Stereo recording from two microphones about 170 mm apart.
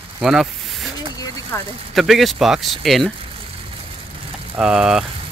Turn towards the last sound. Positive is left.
turn(degrees=-5)  # may be behind; listen again after turning